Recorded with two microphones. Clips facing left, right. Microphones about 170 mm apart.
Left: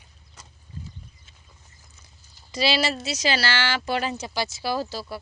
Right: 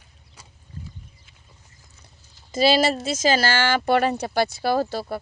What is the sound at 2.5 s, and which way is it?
Speech, 50° right (ahead or behind).